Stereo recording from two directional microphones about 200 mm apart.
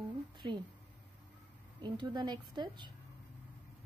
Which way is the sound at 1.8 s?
20° right (ahead or behind).